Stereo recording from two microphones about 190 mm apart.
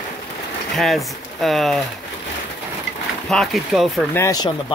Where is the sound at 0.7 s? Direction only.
Centre (ahead or behind).